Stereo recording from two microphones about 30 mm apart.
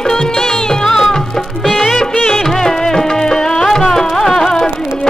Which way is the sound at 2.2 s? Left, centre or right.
Centre.